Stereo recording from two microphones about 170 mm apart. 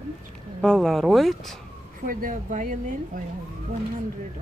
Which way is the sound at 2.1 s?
55° right (ahead or behind).